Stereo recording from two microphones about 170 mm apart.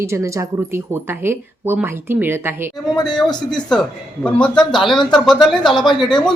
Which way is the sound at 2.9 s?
25° left (ahead or behind).